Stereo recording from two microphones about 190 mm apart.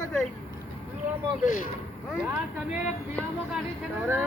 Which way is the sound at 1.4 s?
45° left (ahead or behind).